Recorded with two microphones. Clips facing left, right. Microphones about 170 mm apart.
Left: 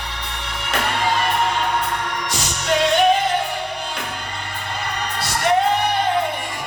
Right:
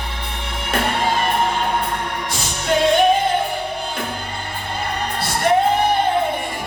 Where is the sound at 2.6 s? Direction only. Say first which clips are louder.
Right 2 dB; 55° right (ahead or behind).